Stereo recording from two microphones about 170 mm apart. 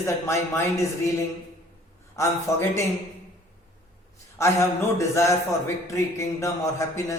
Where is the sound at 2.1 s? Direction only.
15° left (ahead or behind).